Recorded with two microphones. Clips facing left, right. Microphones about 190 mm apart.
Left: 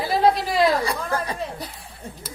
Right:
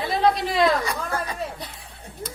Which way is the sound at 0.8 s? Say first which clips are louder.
Left 2 dB; 30° left (ahead or behind).